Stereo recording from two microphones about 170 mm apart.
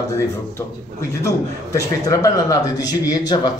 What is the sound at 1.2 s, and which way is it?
A man's voice, 20° left (ahead or behind).